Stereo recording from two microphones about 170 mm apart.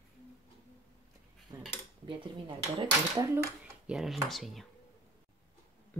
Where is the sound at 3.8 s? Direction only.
Centre (ahead or behind).